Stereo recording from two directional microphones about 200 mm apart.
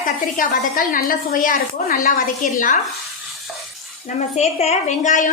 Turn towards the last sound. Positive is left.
turn(degrees=40)  # may be behind; listen again after turning